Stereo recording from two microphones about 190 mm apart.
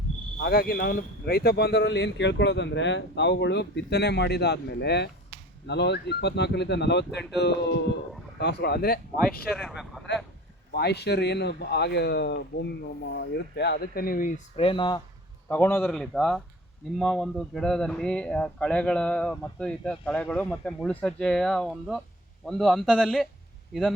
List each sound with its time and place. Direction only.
0.4 s speech: 50° left (ahead or behind)
9.5 s speech: centre (ahead or behind)
10.8 s speech: 60° left (ahead or behind); by 15.0 s 25° left (ahead or behind)
15.4 s speech: 10° left (ahead or behind)